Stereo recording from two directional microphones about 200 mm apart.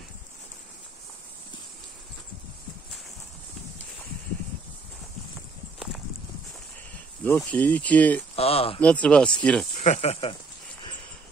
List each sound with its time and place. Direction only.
7.2 s speech: 10° left (ahead or behind)
8.4 s speech: 30° left (ahead or behind)
9.0 s speech: 5° left (ahead or behind)
9.8 s speech: 35° left (ahead or behind)